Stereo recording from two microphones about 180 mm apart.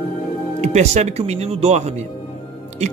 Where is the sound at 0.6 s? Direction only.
40° right (ahead or behind).